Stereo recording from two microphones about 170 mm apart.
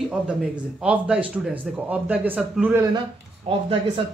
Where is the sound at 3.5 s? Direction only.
30° right (ahead or behind).